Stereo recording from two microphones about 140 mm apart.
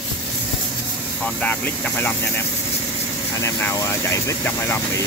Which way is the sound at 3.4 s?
20° left (ahead or behind).